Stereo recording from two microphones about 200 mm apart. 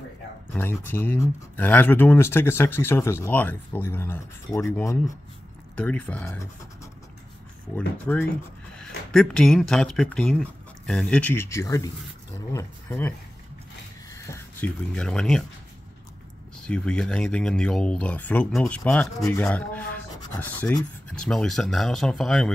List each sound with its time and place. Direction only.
0.5 s speech: 10° left (ahead or behind)
14.1 s speech: 15° left (ahead or behind)
16.5 s speech: 5° left (ahead or behind)
21.1 s speech: 5° left (ahead or behind)